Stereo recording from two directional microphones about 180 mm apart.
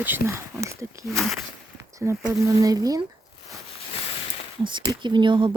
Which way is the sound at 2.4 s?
20° right (ahead or behind).